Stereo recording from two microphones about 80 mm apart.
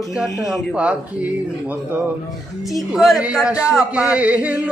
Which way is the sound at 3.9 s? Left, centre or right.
Centre.